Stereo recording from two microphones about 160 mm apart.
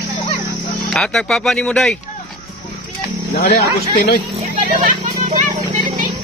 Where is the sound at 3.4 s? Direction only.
75° left (ahead or behind).